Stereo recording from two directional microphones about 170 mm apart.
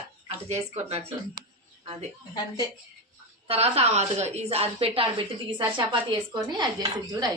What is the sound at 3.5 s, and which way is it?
A woman's voice, 35° right (ahead or behind).